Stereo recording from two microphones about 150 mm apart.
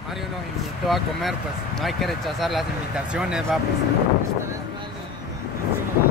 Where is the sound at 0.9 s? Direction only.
Centre (ahead or behind).